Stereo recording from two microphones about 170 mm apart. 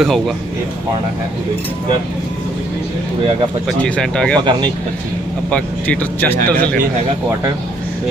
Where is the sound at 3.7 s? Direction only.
5° left (ahead or behind).